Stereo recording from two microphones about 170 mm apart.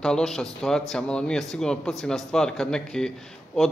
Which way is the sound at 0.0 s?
5° left (ahead or behind).